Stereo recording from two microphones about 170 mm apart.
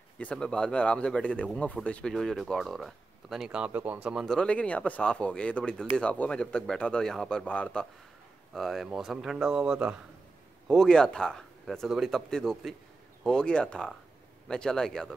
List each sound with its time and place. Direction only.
0.2 s speech: 5° left (ahead or behind)